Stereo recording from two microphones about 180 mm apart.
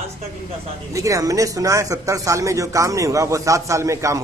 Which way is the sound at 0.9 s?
20° right (ahead or behind).